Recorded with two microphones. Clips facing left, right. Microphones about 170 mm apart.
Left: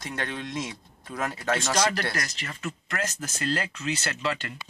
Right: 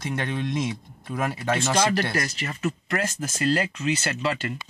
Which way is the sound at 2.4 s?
40° right (ahead or behind).